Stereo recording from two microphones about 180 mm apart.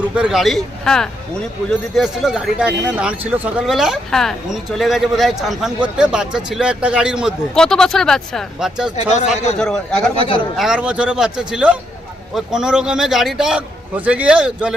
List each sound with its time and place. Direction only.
0.0 s speech: 5° right (ahead or behind)
9.0 s speech: 40° left (ahead or behind)
9.6 s speech: 5° left (ahead or behind)